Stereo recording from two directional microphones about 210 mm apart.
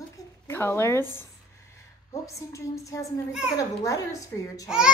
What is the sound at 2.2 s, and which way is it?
Child singing, 15° left (ahead or behind).